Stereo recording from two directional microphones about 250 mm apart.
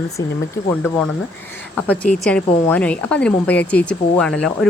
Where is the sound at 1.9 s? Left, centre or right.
Centre.